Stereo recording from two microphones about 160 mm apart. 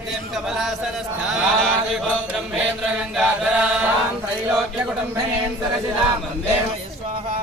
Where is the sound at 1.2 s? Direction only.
Centre (ahead or behind).